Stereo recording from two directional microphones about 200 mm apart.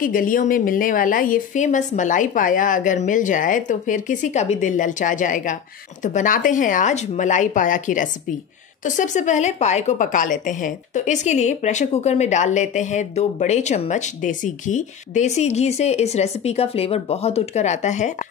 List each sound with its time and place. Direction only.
0.0 s a woman's voice: 45° left (ahead or behind)